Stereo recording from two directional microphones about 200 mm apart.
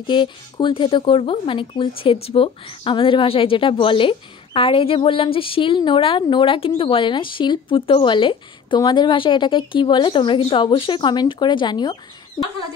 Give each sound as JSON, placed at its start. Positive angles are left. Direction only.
{"t": 0.0, "sound": "speech", "side_deg": 25}